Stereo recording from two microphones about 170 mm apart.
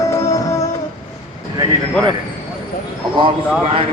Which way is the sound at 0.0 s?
15° left (ahead or behind).